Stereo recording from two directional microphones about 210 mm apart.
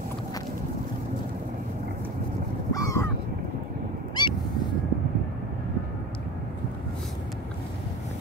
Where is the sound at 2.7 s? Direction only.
15° left (ahead or behind).